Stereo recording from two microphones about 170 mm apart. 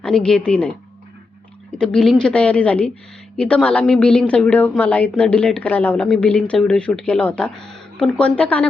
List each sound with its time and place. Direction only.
0.0 s a woman's voice: 5° left (ahead or behind)
1.8 s a woman's voice: 5° left (ahead or behind)